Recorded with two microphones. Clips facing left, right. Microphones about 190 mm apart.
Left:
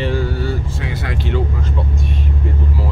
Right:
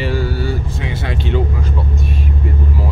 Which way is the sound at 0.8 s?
20° right (ahead or behind).